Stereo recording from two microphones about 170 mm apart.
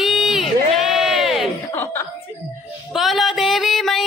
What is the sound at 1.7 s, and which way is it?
Chuckle, 10° left (ahead or behind).